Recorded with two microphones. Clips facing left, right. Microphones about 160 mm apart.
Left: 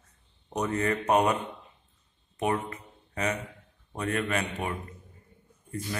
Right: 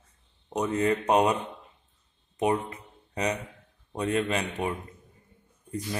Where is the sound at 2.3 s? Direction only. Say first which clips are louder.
Right 3 dB; 20° right (ahead or behind).